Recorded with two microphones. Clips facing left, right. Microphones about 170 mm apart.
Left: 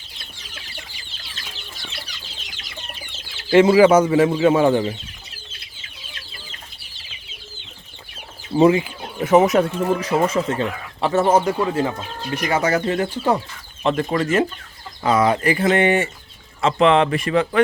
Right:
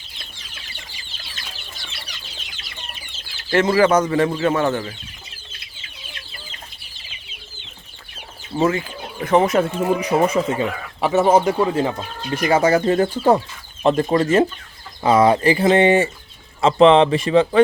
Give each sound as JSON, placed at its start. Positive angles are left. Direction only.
{"t": 3.5, "sound": "speech", "side_deg": 10}
{"t": 8.5, "sound": "speech", "side_deg": 15}
{"t": 9.7, "sound": "speech", "side_deg": -15}